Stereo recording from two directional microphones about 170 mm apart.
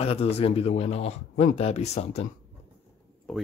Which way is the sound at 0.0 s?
35° left (ahead or behind).